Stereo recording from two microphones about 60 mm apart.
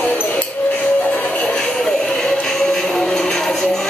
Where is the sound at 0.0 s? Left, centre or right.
Left.